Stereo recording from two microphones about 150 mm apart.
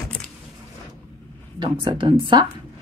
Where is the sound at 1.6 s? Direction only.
30° right (ahead or behind).